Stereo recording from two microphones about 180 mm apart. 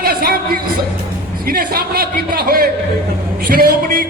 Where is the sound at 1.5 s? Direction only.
55° right (ahead or behind).